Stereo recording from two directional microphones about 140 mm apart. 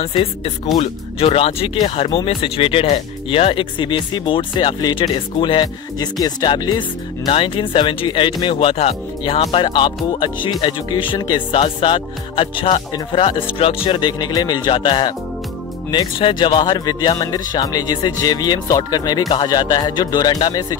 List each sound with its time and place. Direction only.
0.0 s speech: 40° left (ahead or behind)